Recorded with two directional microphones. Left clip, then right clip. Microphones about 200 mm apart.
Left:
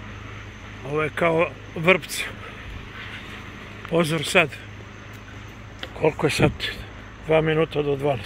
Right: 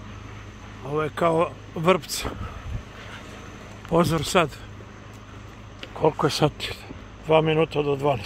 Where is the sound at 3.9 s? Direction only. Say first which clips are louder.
Left 1 dB; 25° right (ahead or behind).